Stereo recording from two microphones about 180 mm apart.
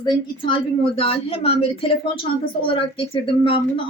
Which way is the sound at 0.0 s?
25° left (ahead or behind).